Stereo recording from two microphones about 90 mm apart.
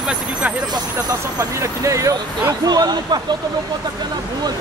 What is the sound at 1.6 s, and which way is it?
Speech, 35° right (ahead or behind).